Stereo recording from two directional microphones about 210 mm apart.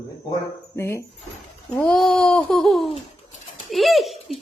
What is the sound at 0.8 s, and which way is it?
Speech, 15° left (ahead or behind).